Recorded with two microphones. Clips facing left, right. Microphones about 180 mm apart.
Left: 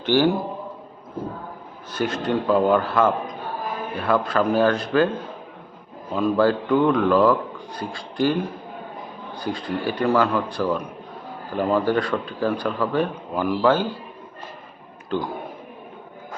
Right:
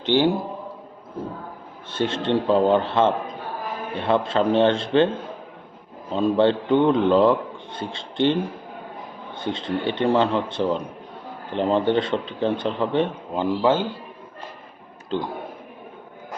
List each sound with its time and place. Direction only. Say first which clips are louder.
0.0 s a man's voice: left 1 dB; 20° right (ahead or behind)
1.9 s a man's voice: right 1 dB; 25° right (ahead or behind)
15.1 s a man's voice: left 1 dB; 20° right (ahead or behind)